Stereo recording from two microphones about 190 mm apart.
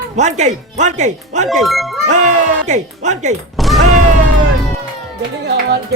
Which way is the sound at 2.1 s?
40° right (ahead or behind).